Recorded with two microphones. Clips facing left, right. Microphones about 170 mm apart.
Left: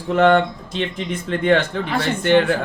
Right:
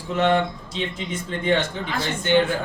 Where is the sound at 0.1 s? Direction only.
60° left (ahead or behind).